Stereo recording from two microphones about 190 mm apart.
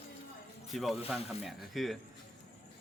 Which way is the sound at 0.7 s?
Centre (ahead or behind).